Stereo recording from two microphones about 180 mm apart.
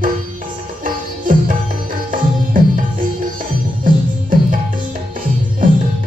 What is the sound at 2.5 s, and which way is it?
Music, 50° right (ahead or behind).